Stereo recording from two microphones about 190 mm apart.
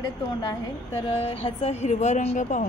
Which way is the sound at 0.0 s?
25° left (ahead or behind).